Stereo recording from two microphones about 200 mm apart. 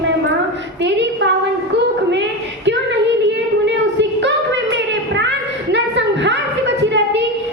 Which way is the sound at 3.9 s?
60° right (ahead or behind).